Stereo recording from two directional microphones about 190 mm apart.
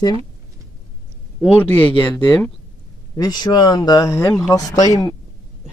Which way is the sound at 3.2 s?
20° left (ahead or behind).